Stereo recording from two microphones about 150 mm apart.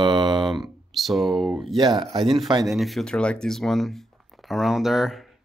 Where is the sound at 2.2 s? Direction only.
Centre (ahead or behind).